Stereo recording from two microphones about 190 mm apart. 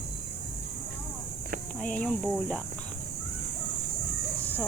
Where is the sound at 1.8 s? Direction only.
5° left (ahead or behind).